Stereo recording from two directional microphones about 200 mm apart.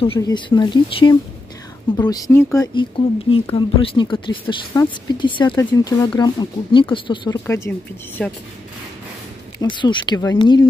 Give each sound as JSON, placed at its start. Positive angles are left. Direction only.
{"t": 0.0, "sound": "speech", "side_deg": 25}
{"t": 7.4, "sound": "speech", "side_deg": 15}
{"t": 9.6, "sound": "speech", "side_deg": 25}